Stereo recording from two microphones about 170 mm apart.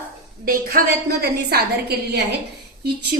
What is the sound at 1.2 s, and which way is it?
Speech, 65° right (ahead or behind).